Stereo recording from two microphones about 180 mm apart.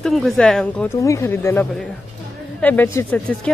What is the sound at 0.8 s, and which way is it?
A woman's voice, 15° left (ahead or behind).